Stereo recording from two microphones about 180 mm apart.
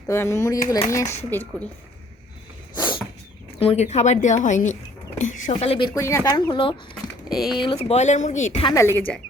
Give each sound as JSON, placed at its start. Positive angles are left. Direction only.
{"t": 0.1, "sound": "a woman's voice", "side_deg": 15}
{"t": 2.7, "sound": "a sound", "side_deg": 25}
{"t": 3.6, "sound": "speech", "side_deg": 35}
{"t": 5.9, "sound": "speech", "side_deg": 15}
{"t": 7.3, "sound": "speech", "side_deg": 0}
{"t": 7.6, "sound": "speech", "side_deg": 30}
{"t": 8.6, "sound": "a woman's voice", "side_deg": 15}